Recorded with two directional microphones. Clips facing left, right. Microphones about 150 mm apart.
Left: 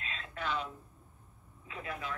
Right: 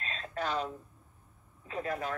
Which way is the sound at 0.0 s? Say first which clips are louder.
Right 4 dB; 40° right (ahead or behind).